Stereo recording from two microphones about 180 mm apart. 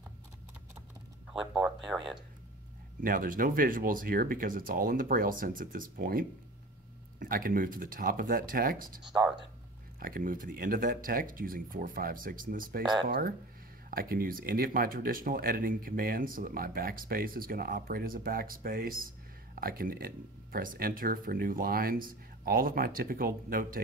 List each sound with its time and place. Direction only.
1.3 s speech: 5° right (ahead or behind)
3.0 s speech: 50° right (ahead or behind)
13.8 s speech: 55° right (ahead or behind)